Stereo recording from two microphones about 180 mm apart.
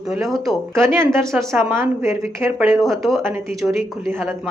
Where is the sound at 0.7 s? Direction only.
15° right (ahead or behind).